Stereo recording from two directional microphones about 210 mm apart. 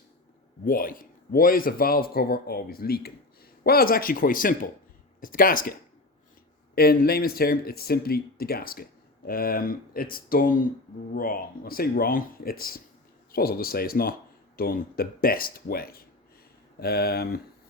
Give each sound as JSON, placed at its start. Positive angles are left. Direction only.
{"t": 0.6, "sound": "speech", "side_deg": 40}
{"t": 6.7, "sound": "speech", "side_deg": 45}